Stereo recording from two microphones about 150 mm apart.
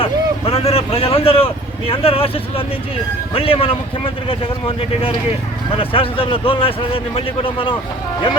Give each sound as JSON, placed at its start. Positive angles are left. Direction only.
{"t": 0.0, "sound": "a man's voice", "side_deg": 40}
{"t": 5.7, "sound": "a man's voice", "side_deg": 35}